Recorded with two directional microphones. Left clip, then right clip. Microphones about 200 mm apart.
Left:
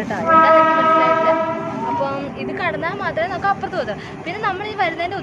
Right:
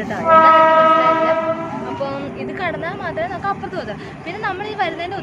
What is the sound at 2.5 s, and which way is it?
A woman's voice, 20° left (ahead or behind).